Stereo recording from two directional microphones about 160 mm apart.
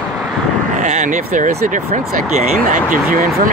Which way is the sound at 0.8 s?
50° right (ahead or behind).